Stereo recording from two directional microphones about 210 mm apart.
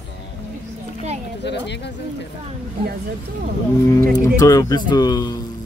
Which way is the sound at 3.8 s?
15° left (ahead or behind).